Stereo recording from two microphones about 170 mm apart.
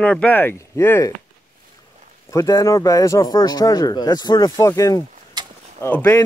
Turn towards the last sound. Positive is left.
turn(degrees=10)  # may be behind; listen again after turning